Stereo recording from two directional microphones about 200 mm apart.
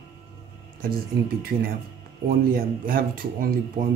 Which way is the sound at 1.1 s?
50° right (ahead or behind).